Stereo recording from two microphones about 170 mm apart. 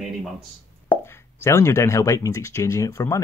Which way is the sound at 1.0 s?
15° left (ahead or behind).